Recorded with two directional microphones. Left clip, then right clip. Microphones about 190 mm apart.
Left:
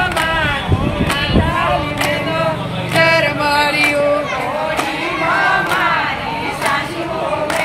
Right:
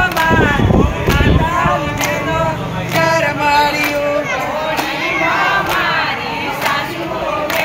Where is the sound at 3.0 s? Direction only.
20° left (ahead or behind).